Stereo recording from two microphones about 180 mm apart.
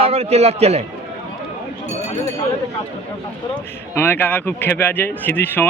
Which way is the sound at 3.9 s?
10° left (ahead or behind).